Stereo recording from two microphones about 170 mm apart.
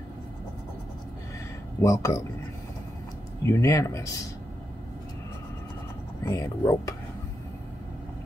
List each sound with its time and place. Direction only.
1.8 s speech: 20° left (ahead or behind)
3.4 s speech: 15° left (ahead or behind)
6.2 s speech: 20° left (ahead or behind)